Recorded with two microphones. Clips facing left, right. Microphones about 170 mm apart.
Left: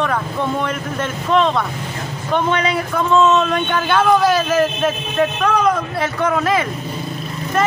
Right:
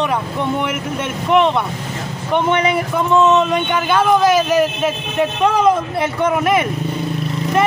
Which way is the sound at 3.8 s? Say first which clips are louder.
Right 1 dB; 5° right (ahead or behind).